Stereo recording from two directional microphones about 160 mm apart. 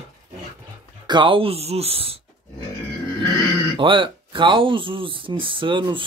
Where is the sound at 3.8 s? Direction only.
30° right (ahead or behind).